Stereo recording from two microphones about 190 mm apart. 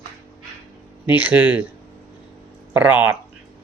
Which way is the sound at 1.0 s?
10° right (ahead or behind).